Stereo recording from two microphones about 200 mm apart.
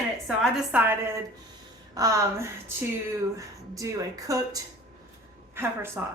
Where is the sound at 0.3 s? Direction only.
10° right (ahead or behind).